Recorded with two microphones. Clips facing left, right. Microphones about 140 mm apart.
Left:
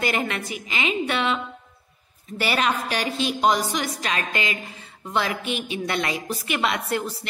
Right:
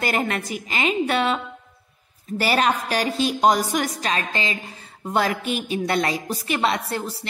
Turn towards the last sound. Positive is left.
turn(degrees=-35)  # may be behind; listen again after turning